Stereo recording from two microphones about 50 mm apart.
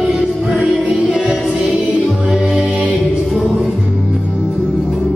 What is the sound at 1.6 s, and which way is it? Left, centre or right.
Music, centre.